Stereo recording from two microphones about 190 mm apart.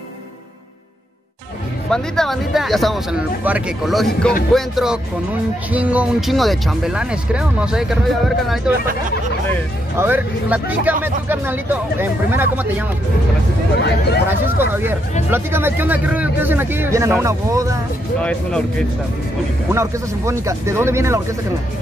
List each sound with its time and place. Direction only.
1.9 s speech: 5° left (ahead or behind)
9.9 s speech: 10° right (ahead or behind)
13.7 s speech: 60° left (ahead or behind)
14.6 s speech: 10° right (ahead or behind)
18.2 s speech: 5° left (ahead or behind)
19.7 s speech: 15° right (ahead or behind)